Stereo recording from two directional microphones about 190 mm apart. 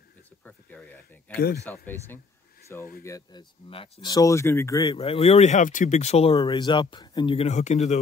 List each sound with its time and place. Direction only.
0.5 s speech: 10° left (ahead or behind)
1.3 s speech: 55° left (ahead or behind)
1.7 s speech: 10° left (ahead or behind)
4.9 s speech: 30° left (ahead or behind)
6.3 s speech: 20° left (ahead or behind); by 8.0 s 35° left (ahead or behind)